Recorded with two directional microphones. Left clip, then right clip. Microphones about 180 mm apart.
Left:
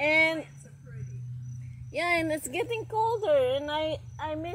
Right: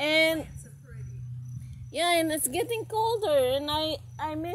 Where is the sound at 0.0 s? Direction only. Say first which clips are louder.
Even; 20° right (ahead or behind).